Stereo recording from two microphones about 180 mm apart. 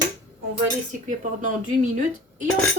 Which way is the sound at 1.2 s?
45° right (ahead or behind).